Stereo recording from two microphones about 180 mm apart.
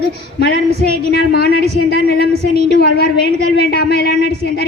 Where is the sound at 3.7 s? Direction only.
60° left (ahead or behind).